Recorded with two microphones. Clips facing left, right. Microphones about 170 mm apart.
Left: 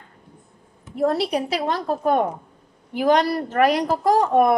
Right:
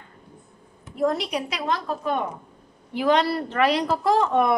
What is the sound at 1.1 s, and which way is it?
A woman's voice, 35° left (ahead or behind).